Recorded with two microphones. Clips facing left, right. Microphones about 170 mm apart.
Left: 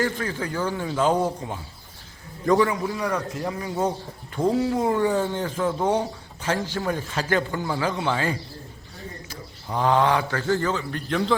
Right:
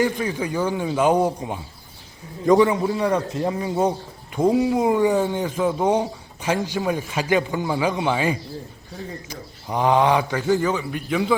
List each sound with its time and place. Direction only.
0.0 s a man's voice: 15° right (ahead or behind)